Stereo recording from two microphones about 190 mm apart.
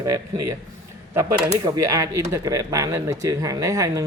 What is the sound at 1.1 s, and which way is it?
Speech, 15° right (ahead or behind).